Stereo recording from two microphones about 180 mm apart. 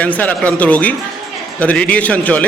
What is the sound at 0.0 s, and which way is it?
A man's voice, 10° left (ahead or behind).